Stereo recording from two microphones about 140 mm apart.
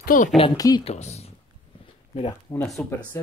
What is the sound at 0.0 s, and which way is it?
Speech, 80° left.